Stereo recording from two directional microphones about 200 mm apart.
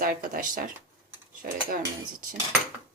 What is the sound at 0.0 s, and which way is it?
A woman's voice, 45° right (ahead or behind).